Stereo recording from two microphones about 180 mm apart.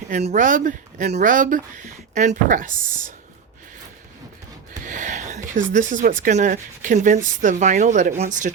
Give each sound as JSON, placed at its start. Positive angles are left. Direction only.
{"t": 0.1, "sound": "a woman's voice", "side_deg": -40}
{"t": 4.9, "sound": "a sound", "side_deg": -45}
{"t": 5.9, "sound": "a woman's voice", "side_deg": -45}